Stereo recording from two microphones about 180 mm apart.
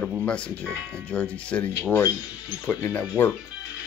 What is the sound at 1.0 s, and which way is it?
Speech, 5° left (ahead or behind).